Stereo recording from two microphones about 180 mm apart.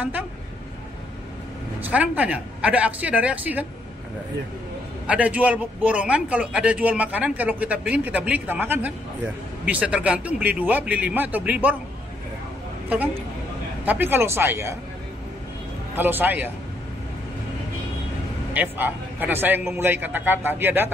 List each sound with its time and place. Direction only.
1.8 s a man's voice: 10° right (ahead or behind)
5.0 s a man's voice: 5° right (ahead or behind)
13.8 s a man's voice: 10° right (ahead or behind)
15.9 s a man's voice: 10° right (ahead or behind)
18.5 s a man's voice: 10° right (ahead or behind)